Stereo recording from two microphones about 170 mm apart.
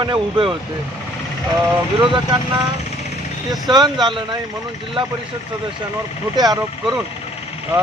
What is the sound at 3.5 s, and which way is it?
Speech, 25° right (ahead or behind).